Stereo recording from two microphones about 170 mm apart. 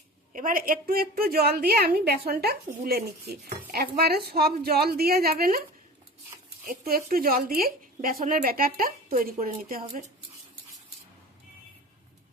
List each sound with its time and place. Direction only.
0.3 s a woman's voice: 55° right (ahead or behind)
6.7 s a woman's voice: 60° right (ahead or behind)